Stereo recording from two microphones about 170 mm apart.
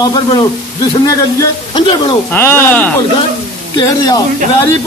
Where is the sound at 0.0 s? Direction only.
25° left (ahead or behind).